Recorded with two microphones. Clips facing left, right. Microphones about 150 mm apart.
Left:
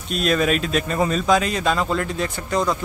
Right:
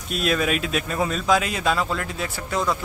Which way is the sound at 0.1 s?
5° right (ahead or behind).